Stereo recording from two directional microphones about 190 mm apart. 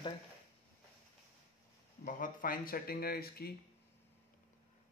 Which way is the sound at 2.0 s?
45° left (ahead or behind).